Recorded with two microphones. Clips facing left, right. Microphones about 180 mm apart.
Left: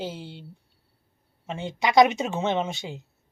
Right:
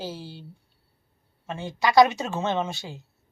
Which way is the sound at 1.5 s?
20° left (ahead or behind).